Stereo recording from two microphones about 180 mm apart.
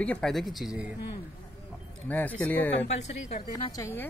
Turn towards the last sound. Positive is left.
turn(degrees=15)  # may be behind; listen again after turning